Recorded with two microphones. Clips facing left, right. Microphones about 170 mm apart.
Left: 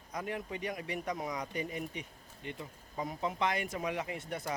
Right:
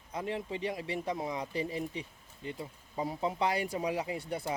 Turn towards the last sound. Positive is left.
turn(degrees=-30)  # may be behind; listen again after turning